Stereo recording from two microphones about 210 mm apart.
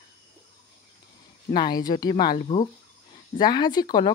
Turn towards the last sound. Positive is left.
turn(degrees=20)  # may be behind; listen again after turning